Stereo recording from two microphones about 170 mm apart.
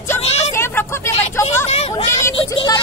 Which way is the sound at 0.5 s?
15° left (ahead or behind).